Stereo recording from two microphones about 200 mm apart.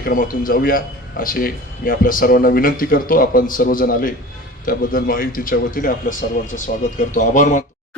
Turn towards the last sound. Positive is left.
turn(degrees=40)  # may be behind; listen again after turning